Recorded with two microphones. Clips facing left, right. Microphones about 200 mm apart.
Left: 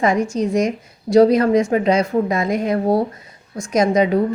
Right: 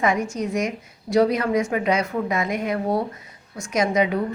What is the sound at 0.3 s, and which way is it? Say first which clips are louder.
A woman's voice: left 6 dB; 30° left (ahead or behind).